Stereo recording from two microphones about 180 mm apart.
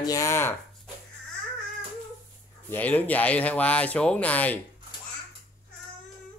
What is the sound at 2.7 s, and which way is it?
Speech, 10° left (ahead or behind).